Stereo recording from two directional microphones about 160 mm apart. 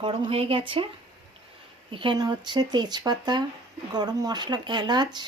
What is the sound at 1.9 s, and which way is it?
Speech, 30° right (ahead or behind).